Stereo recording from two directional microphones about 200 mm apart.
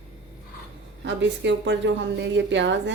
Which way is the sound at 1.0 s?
65° right (ahead or behind).